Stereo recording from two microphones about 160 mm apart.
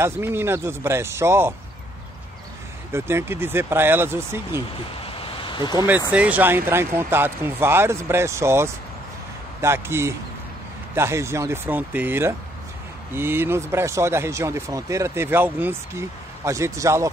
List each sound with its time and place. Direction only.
0.0 s speech: 15° right (ahead or behind)
2.9 s speech: 15° right (ahead or behind)
5.4 s a sound: 30° left (ahead or behind)
5.8 s speech: 10° right (ahead or behind)